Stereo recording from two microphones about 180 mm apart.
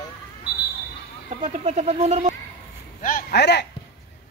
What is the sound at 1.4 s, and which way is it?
Speech, 35° right (ahead or behind).